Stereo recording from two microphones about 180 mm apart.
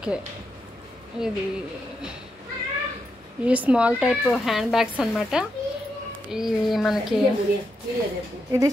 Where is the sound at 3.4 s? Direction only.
5° right (ahead or behind).